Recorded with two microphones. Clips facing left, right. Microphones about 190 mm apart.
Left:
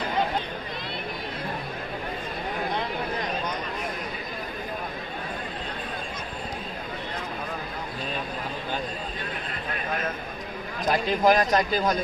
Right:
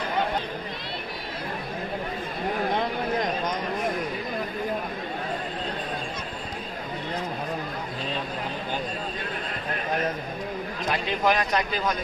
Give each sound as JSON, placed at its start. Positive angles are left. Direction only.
{"t": 10.9, "sound": "speech", "side_deg": 40}